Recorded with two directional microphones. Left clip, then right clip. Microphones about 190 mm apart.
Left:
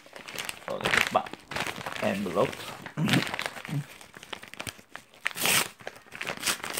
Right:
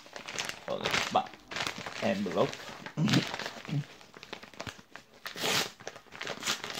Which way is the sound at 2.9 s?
30° left (ahead or behind).